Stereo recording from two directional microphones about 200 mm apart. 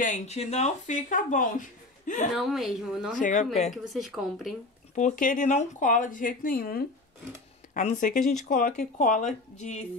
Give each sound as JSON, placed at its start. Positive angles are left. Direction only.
{"t": 0.0, "sound": "speech", "side_deg": 35}
{"t": 2.3, "sound": "speech", "side_deg": 0}
{"t": 3.2, "sound": "speech", "side_deg": 40}
{"t": 3.7, "sound": "speech", "side_deg": 0}
{"t": 4.9, "sound": "speech", "side_deg": 40}